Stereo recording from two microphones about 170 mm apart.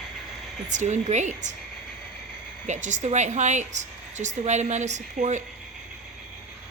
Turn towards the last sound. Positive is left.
turn(degrees=-45)  # may be behind; listen again after turning